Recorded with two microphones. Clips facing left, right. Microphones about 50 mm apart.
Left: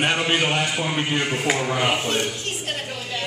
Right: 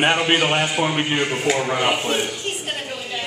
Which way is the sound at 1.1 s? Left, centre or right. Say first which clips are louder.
Right 2 dB; centre.